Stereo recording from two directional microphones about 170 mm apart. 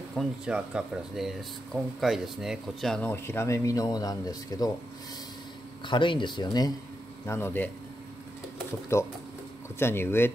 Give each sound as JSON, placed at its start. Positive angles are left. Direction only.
{"t": 0.1, "sound": "speech", "side_deg": -5}
{"t": 5.9, "sound": "speech", "side_deg": 30}
{"t": 7.2, "sound": "speech", "side_deg": 15}
{"t": 8.9, "sound": "speech", "side_deg": 15}